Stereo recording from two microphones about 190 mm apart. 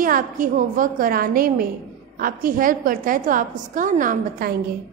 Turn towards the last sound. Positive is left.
turn(degrees=-45)  # may be behind; listen again after turning